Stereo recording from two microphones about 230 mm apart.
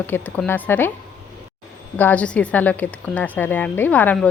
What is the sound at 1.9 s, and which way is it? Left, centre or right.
A woman's voice, centre.